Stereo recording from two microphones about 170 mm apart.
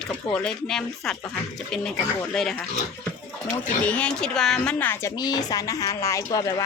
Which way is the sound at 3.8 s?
5° left (ahead or behind).